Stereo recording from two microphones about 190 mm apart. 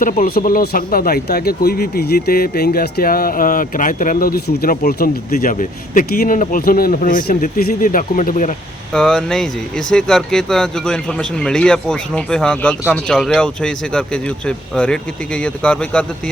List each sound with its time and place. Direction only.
0.0 s speech: 45° left (ahead or behind)
8.9 s speech: 5° left (ahead or behind)